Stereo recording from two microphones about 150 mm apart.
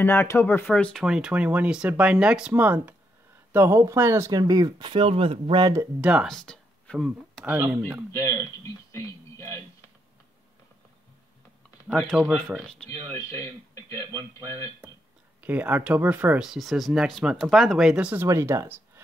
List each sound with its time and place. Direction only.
0.0 s speech: 15° left (ahead or behind)
1.0 s speech: 5° right (ahead or behind); by 5.7 s 35° right (ahead or behind)
5.9 s speech: 10° right (ahead or behind)
6.2 s speech: 5° left (ahead or behind)
7.4 s speech: 10° right (ahead or behind)
8.9 s speech: 20° left (ahead or behind)
12.0 s speech: centre (ahead or behind)
12.9 s speech: 45° right (ahead or behind)
15.4 s speech: 10° right (ahead or behind)